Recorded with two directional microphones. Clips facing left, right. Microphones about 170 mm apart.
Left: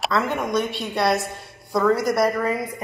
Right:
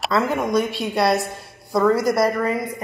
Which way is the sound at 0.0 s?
5° right (ahead or behind).